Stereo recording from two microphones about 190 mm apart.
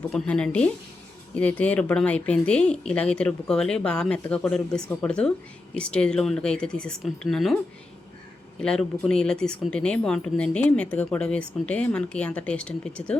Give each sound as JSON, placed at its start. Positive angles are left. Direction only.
{"t": 0.1, "sound": "speech", "side_deg": 5}
{"t": 8.6, "sound": "speech", "side_deg": 5}